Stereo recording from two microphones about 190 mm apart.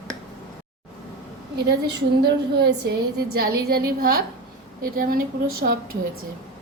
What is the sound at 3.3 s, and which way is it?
A woman's voice, 50° right (ahead or behind).